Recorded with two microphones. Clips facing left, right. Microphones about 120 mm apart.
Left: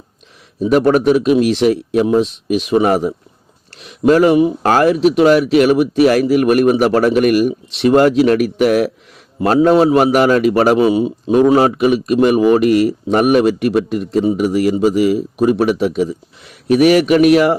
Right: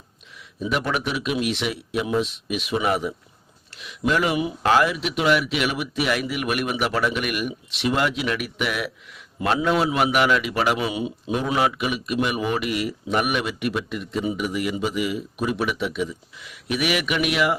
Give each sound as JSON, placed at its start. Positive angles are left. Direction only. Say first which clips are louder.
{"t": 0.6, "sound": "a man's voice", "louder": "left 13 dB", "side_deg": 40}